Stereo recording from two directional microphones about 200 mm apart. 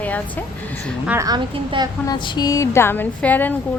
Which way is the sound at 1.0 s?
15° right (ahead or behind).